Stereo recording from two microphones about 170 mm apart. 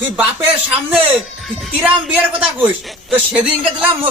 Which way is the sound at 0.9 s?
5° right (ahead or behind).